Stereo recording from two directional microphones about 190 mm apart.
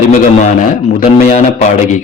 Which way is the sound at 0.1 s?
40° left (ahead or behind).